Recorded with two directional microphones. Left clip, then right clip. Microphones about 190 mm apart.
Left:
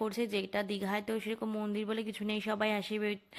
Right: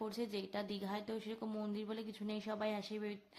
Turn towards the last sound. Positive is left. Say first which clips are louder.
# left 8 dB
turn(degrees=30)  # may be behind; listen again after turning